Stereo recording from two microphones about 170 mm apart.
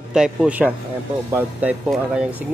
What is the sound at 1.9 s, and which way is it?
Speech, 5° right (ahead or behind).